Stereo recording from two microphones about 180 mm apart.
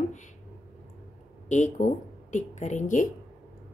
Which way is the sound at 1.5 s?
45° left (ahead or behind).